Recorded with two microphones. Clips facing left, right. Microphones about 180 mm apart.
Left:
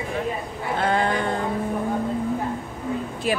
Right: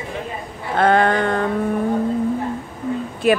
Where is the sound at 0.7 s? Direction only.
65° right (ahead or behind).